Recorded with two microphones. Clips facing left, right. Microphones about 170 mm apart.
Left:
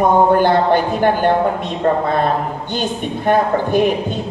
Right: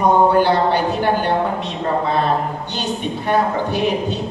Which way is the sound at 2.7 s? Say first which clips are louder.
Left 2 dB; 50° left (ahead or behind).